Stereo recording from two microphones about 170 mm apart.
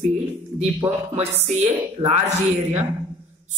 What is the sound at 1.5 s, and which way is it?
A man's voice, 40° right (ahead or behind).